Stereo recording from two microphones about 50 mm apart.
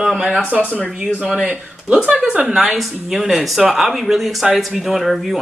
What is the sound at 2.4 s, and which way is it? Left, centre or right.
Speech, centre.